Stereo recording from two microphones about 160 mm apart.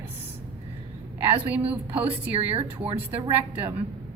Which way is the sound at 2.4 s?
35° right (ahead or behind).